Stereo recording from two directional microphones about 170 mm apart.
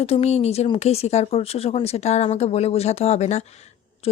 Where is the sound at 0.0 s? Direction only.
35° left (ahead or behind).